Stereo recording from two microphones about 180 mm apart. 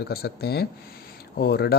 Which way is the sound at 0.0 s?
60° left (ahead or behind).